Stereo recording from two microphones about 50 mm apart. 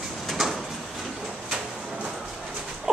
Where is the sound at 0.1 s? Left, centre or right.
Centre.